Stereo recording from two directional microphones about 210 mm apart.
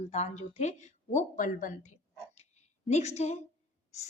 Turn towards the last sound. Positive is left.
turn(degrees=30)  # may be behind; listen again after turning